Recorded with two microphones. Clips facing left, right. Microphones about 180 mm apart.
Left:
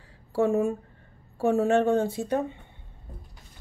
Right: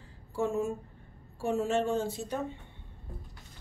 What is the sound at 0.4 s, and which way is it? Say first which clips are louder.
Speech: left 7 dB; 60° left (ahead or behind).